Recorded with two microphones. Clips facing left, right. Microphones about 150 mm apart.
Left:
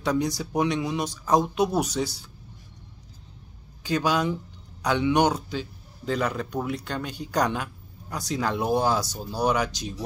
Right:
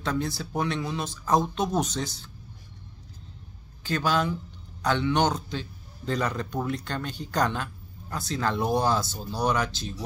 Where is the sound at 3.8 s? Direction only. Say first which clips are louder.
Left 2 dB; 15° left (ahead or behind).